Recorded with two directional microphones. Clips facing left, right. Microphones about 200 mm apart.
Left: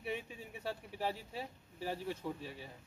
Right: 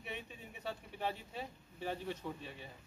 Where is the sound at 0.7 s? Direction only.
5° left (ahead or behind).